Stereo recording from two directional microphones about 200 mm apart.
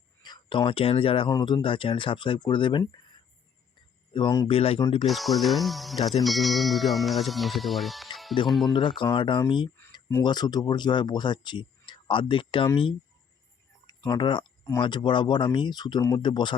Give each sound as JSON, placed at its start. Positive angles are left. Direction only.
{"t": 0.2, "sound": "speech", "side_deg": 25}
{"t": 4.1, "sound": "speech", "side_deg": 20}
{"t": 5.0, "sound": "speech", "side_deg": 0}
{"t": 9.0, "sound": "speech", "side_deg": 25}
{"t": 9.7, "sound": "speech", "side_deg": 10}